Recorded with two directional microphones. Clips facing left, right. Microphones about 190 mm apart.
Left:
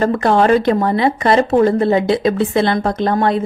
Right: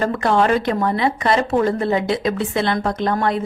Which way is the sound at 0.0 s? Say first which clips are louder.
Left 4 dB; 35° left (ahead or behind).